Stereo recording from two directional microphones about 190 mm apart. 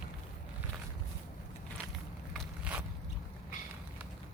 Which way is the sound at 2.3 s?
5° right (ahead or behind).